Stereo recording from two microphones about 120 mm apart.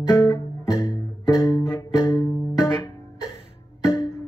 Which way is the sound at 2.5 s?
20° left (ahead or behind).